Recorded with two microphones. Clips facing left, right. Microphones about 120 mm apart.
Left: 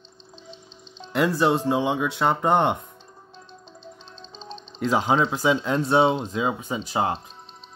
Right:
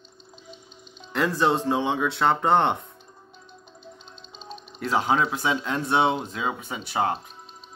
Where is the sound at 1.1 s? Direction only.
10° left (ahead or behind).